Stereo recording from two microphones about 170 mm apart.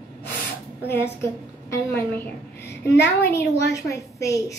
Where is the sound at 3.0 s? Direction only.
75° left (ahead or behind).